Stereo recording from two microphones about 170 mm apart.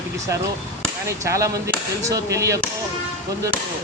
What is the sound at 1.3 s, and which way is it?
Speech, 20° right (ahead or behind).